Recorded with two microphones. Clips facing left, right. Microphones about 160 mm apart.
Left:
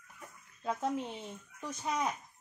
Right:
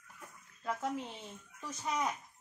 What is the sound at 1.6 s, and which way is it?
Speech, 15° left (ahead or behind).